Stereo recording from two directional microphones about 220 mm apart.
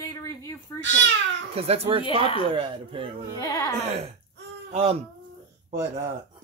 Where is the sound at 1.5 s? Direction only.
25° right (ahead or behind).